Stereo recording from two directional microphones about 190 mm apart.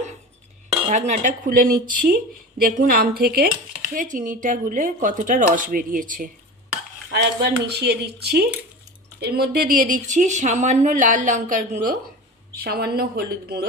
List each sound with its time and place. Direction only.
0.9 s speech: 35° right (ahead or behind)
7.1 s speech: 60° right (ahead or behind); by 11.9 s 45° right (ahead or behind)
12.5 s speech: 55° right (ahead or behind)